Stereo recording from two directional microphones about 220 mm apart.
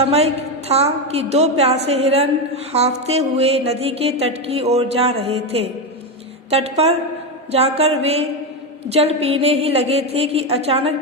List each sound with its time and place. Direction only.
0.0 s music: 30° right (ahead or behind)